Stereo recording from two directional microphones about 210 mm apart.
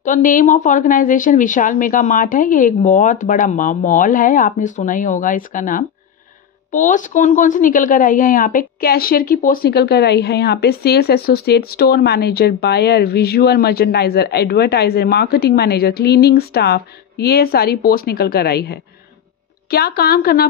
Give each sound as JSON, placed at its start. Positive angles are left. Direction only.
{"t": 0.0, "sound": "a woman's voice", "side_deg": 40}